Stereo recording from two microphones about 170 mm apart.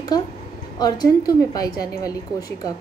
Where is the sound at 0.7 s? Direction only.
25° left (ahead or behind).